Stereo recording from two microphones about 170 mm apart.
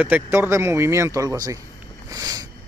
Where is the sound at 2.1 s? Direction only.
20° right (ahead or behind).